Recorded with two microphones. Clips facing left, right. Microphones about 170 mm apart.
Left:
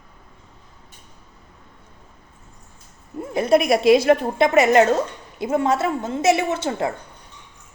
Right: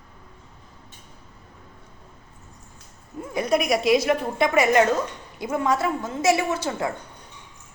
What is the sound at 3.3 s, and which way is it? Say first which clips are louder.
A woman's voice: left 5 dB; 25° left (ahead or behind).